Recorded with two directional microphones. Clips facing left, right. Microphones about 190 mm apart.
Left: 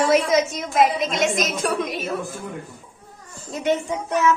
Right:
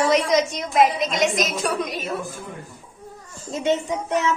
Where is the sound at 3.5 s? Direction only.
25° right (ahead or behind).